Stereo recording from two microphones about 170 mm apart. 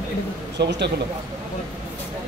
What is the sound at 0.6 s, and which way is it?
Speech, 90° right.